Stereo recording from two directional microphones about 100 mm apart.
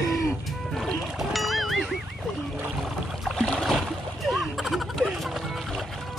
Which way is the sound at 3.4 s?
5° left (ahead or behind).